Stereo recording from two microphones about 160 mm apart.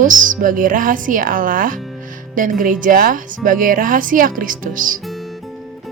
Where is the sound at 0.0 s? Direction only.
55° right (ahead or behind).